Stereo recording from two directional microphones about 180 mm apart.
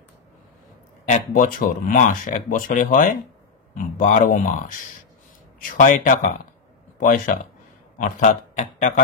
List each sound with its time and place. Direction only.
1.0 s speech: 45° left (ahead or behind)